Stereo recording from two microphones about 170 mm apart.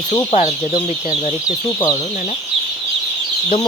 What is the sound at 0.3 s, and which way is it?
Speech, 45° left (ahead or behind).